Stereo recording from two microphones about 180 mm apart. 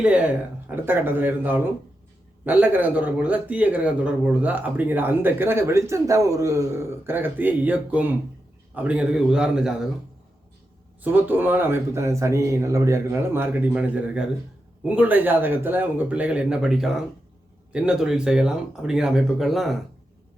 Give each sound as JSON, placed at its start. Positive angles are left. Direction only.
{"t": 0.0, "sound": "speech", "side_deg": -5}
{"t": 11.0, "sound": "speech", "side_deg": -10}